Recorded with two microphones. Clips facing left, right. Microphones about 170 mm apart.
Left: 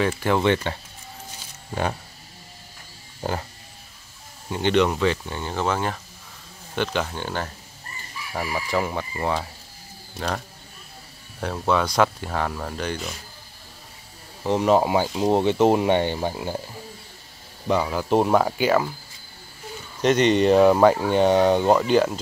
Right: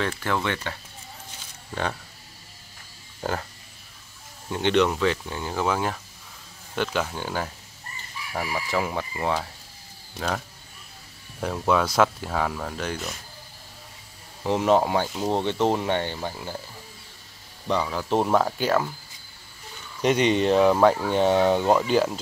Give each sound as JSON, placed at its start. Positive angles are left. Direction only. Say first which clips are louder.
{"t": 0.0, "sound": "speech", "louder": "left 6 dB", "side_deg": 15}
{"t": 3.2, "sound": "speech", "louder": "left 1 dB", "side_deg": 10}
{"t": 4.5, "sound": "speech", "louder": "left 1 dB", "side_deg": 0}
{"t": 14.4, "sound": "speech", "louder": "left 2 dB", "side_deg": 0}
{"t": 17.6, "sound": "speech", "louder": "left 3 dB", "side_deg": 5}
{"t": 20.0, "sound": "speech", "louder": "left 3 dB", "side_deg": -5}